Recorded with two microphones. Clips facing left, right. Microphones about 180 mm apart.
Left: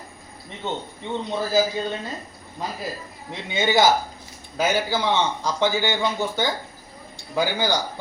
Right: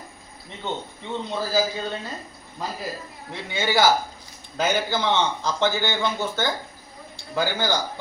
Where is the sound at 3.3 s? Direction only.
20° left (ahead or behind).